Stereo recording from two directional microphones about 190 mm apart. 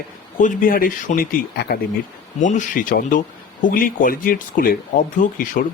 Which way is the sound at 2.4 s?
40° left (ahead or behind).